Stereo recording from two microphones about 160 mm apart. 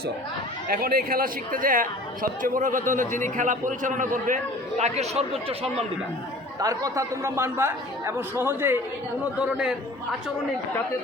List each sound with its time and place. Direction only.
0.7 s a man's voice: 65° right (ahead or behind)
4.8 s a man's voice: 40° right (ahead or behind)
6.6 s a man's voice: 20° right (ahead or behind); by 10.3 s 5° right (ahead or behind)